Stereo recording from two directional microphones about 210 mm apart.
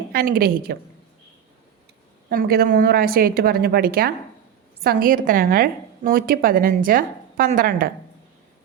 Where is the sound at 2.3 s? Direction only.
45° right (ahead or behind).